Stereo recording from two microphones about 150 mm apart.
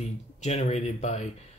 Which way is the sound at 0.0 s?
50° left (ahead or behind).